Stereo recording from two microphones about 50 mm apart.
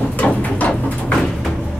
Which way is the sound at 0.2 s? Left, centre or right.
Left.